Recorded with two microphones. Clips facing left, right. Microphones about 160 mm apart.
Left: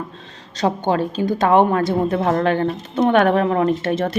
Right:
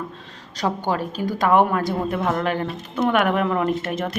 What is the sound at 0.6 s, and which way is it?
A woman's voice, 25° left (ahead or behind).